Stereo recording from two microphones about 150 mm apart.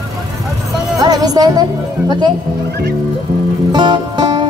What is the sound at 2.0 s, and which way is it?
Speech, 30° right (ahead or behind).